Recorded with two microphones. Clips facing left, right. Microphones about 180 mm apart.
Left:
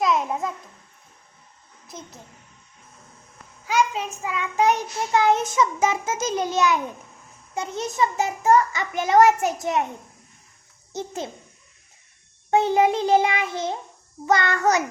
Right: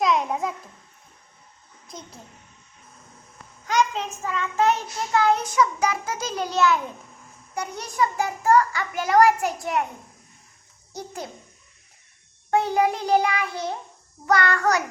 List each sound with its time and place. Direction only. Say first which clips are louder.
0.0 s babbling: even; centre (ahead or behind)
3.7 s child singing: even; 10° left (ahead or behind)
7.5 s a child's voice: left 3 dB; 25° left (ahead or behind)
10.9 s a child's voice: left 4 dB; 25° left (ahead or behind)
12.5 s a child's voice: left 3 dB; 20° left (ahead or behind)